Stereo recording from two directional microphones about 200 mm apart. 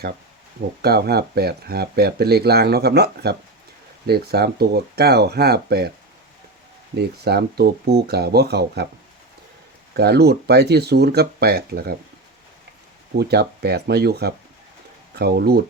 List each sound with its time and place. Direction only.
0.8 s speech: 50° right (ahead or behind)
6.9 s speech: 55° right (ahead or behind)
9.9 s speech: 55° right (ahead or behind)
13.1 s speech: 55° right (ahead or behind)